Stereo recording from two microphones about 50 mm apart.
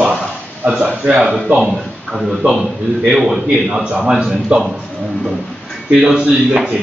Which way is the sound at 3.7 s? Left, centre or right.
Centre.